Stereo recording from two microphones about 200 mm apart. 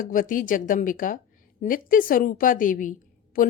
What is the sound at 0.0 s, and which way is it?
A woman's voice, 45° left (ahead or behind).